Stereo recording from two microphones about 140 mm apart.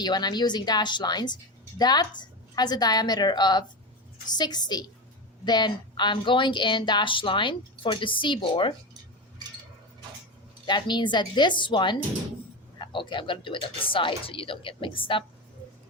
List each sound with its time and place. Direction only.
0.0 s a woman's voice: 30° left (ahead or behind)
10.7 s a woman's voice: 30° left (ahead or behind)